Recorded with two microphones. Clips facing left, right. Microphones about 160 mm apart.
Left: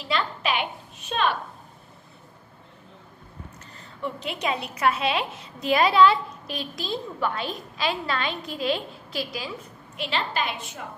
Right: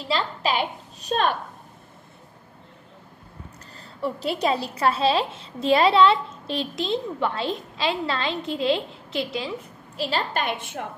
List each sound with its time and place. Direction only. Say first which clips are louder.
0.1 s a woman's voice: right 2 dB; 35° right (ahead or behind)
4.0 s a woman's voice: right 5 dB; 35° right (ahead or behind)
9.9 s a woman's voice: right 2 dB; 40° right (ahead or behind)